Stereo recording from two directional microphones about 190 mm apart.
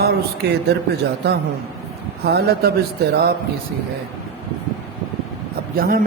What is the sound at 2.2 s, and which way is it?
Music, 55° right (ahead or behind).